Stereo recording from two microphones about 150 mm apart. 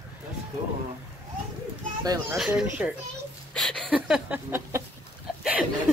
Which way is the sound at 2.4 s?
5° right (ahead or behind).